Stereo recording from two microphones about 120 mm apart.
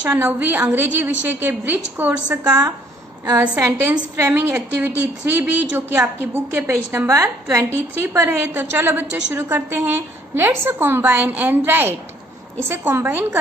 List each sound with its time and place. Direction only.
0.1 s a woman's voice: 15° right (ahead or behind)
2.4 s a woman's voice: 30° right (ahead or behind)